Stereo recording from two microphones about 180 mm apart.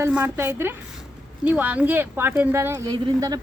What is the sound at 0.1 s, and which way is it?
Speech, 10° right (ahead or behind).